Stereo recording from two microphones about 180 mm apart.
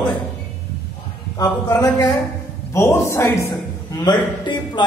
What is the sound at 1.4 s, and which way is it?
A man's voice, 20° left (ahead or behind).